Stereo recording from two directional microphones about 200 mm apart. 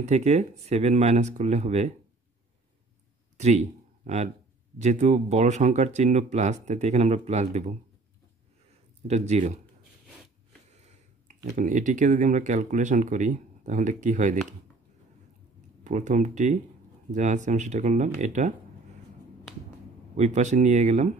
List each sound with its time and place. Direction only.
0.0 s speech: 35° right (ahead or behind)
3.3 s speech: 35° right (ahead or behind)
9.0 s speech: 35° right (ahead or behind)
10.7 s speech: 35° right (ahead or behind)
15.8 s speech: 40° right (ahead or behind)
20.2 s speech: 35° right (ahead or behind)